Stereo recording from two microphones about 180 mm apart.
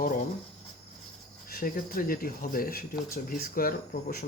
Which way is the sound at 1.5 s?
55° left (ahead or behind).